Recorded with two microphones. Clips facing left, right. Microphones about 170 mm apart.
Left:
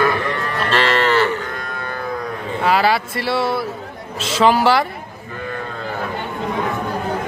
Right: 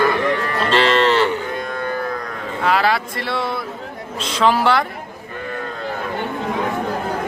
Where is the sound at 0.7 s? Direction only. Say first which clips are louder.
Right 1 dB; 25° right (ahead or behind).